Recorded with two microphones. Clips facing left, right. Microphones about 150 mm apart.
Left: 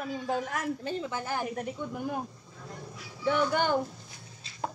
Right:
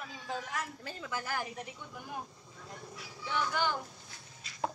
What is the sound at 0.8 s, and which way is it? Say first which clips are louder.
Speech: left 7 dB; 25° left (ahead or behind).